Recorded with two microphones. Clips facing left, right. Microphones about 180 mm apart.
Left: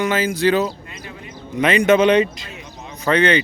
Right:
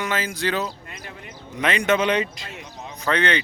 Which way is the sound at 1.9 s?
20° left (ahead or behind).